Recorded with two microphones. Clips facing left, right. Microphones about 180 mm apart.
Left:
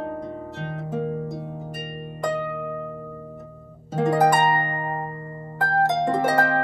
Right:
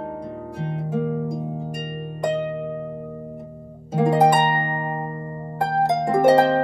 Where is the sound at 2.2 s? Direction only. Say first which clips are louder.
Right 3 dB; 20° right (ahead or behind).